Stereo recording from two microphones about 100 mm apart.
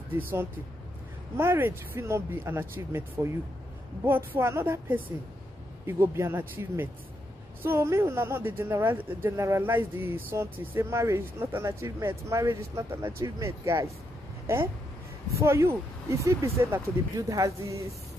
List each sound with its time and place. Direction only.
0.1 s speech: 20° right (ahead or behind)
15.3 s speech: 30° right (ahead or behind)